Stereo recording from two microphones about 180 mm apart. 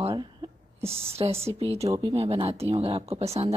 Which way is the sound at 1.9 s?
20° right (ahead or behind).